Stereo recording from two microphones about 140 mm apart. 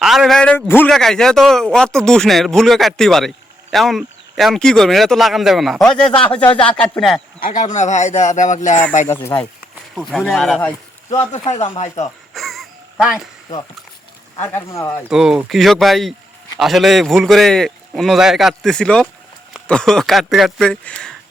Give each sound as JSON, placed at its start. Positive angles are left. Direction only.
{"t": 0.0, "sound": "speech", "side_deg": -5}
{"t": 0.9, "sound": "speech", "side_deg": 5}
{"t": 7.3, "sound": "speech", "side_deg": 80}
{"t": 9.0, "sound": "speech", "side_deg": 20}
{"t": 9.9, "sound": "speech", "side_deg": 0}
{"t": 11.1, "sound": "speech", "side_deg": 55}
{"t": 12.3, "sound": "a sound", "side_deg": 0}
{"t": 14.4, "sound": "speech", "side_deg": 20}
{"t": 15.1, "sound": "speech", "side_deg": -5}